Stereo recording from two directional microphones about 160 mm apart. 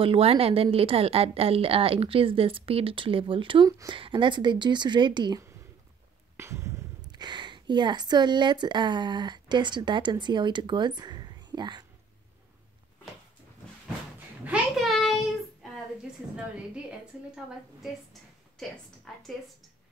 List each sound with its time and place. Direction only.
0.0 s a woman's voice: 35° right (ahead or behind)
6.3 s speech: 15° right (ahead or behind)
14.4 s child singing: 5° right (ahead or behind)
19.1 s a woman's voice: centre (ahead or behind)